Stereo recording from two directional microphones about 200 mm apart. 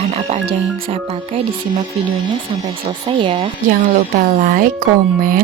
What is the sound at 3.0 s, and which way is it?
Speech, 25° right (ahead or behind).